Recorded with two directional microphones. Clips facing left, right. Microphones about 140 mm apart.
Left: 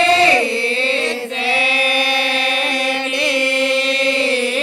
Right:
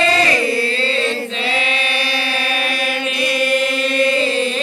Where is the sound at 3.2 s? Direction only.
85° left.